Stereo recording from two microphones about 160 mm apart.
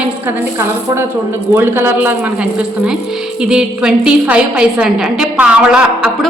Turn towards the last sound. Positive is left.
turn(degrees=-5)  # may be behind; listen again after turning